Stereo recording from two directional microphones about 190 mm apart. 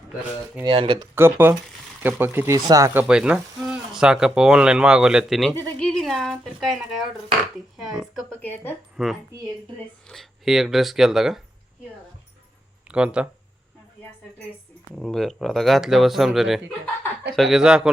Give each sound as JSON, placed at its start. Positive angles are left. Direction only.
{"t": 0.6, "sound": "speech", "side_deg": -25}
{"t": 1.1, "sound": "speech", "side_deg": -10}
{"t": 8.4, "sound": "speech", "side_deg": 10}
{"t": 9.0, "sound": "speech", "side_deg": -5}
{"t": 12.9, "sound": "speech", "side_deg": -5}
{"t": 14.9, "sound": "speech", "side_deg": 0}